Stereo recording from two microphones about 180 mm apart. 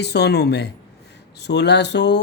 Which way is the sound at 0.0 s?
65° left (ahead or behind).